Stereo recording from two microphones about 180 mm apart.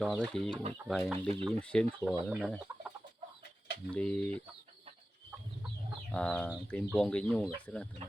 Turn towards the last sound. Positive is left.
turn(degrees=5)  # may be behind; listen again after turning